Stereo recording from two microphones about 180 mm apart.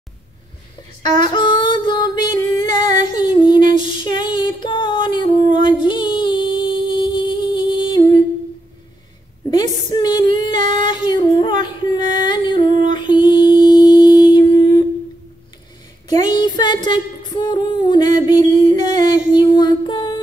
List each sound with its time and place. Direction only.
1.2 s music: 25° left (ahead or behind)
3.1 s female singing: 25° left (ahead or behind)
3.8 s music: 25° left (ahead or behind)
5.5 s female singing: 25° left (ahead or behind)
9.5 s female singing: 25° left (ahead or behind)
10.8 s singing: 25° left (ahead or behind)
16.3 s a capella: 25° left (ahead or behind)
18.9 s a sound: 25° left (ahead or behind)